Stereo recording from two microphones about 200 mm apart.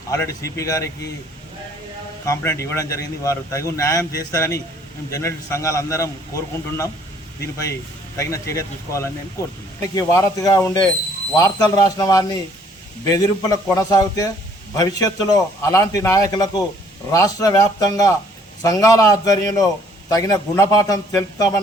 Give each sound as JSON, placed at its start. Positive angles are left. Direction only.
{"t": 0.1, "sound": "a man's voice", "side_deg": 15}
{"t": 2.2, "sound": "a man's voice", "side_deg": 15}